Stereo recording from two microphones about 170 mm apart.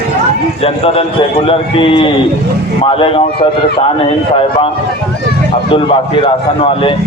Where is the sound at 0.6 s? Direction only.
35° left (ahead or behind).